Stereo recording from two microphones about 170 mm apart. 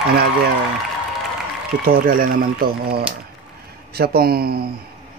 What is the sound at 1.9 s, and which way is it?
Speech, 55° right (ahead or behind).